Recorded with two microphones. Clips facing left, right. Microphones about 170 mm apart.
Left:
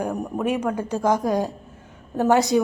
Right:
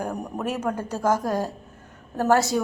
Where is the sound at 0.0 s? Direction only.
5° left (ahead or behind).